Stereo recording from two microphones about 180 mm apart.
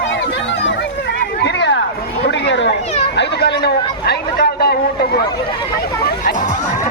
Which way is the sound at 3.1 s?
70° left (ahead or behind).